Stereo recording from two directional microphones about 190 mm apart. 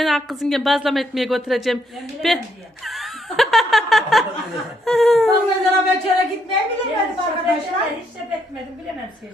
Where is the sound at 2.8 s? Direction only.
Centre (ahead or behind).